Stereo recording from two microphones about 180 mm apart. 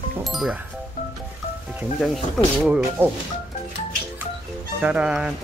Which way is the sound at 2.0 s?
Centre (ahead or behind).